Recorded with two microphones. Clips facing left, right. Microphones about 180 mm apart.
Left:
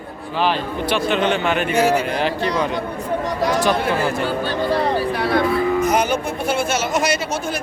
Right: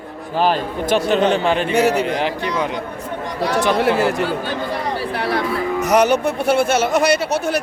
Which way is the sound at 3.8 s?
75° right (ahead or behind).